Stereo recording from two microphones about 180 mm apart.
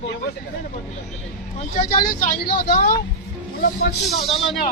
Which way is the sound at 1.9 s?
50° left (ahead or behind).